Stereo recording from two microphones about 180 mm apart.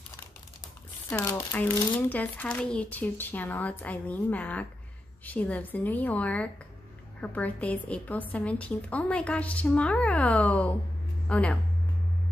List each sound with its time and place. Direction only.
1.1 s a woman's voice: 10° left (ahead or behind)